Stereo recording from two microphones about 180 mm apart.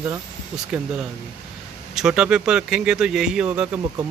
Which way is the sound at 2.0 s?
5° right (ahead or behind).